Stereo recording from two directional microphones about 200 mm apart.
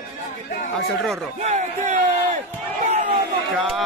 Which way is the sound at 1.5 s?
40° right (ahead or behind).